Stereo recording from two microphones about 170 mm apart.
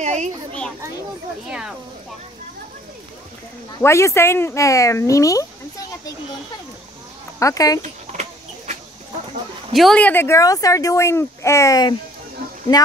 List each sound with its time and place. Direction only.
0.0 s children playing: 45° right (ahead or behind)
3.7 s speech: 15° left (ahead or behind)
7.3 s speech: 20° left (ahead or behind)
7.8 s a sound: 45° right (ahead or behind)
9.8 s speech: 5° left (ahead or behind); by 11.9 s 20° left (ahead or behind)